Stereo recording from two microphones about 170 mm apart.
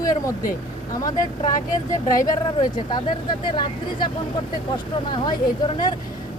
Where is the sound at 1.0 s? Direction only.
20° left (ahead or behind).